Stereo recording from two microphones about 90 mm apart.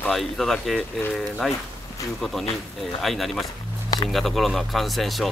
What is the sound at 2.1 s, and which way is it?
Speech, centre (ahead or behind).